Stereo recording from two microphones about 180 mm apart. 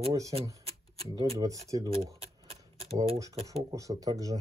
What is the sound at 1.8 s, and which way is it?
Typewriter, 35° right (ahead or behind).